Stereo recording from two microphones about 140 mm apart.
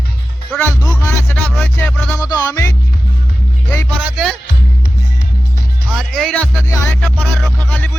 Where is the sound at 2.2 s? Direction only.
25° left (ahead or behind).